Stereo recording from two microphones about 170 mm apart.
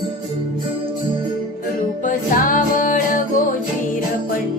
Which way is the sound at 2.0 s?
50° left (ahead or behind).